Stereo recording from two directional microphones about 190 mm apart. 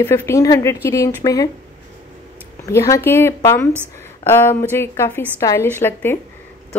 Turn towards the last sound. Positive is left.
turn(degrees=10)  # may be behind; listen again after turning